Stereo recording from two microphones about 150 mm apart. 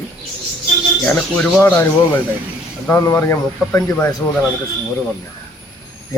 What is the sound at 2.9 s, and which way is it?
Speech, 20° left (ahead or behind).